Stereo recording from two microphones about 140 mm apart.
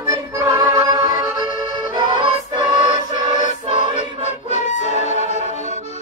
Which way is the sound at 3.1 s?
65° left (ahead or behind).